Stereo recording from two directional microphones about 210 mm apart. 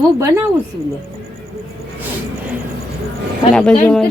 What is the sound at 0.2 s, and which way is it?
Speech, 15° right (ahead or behind).